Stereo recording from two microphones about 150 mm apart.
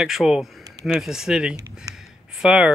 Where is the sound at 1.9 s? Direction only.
Centre (ahead or behind).